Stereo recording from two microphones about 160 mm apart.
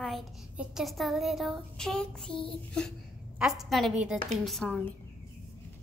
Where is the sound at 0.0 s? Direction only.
Centre (ahead or behind).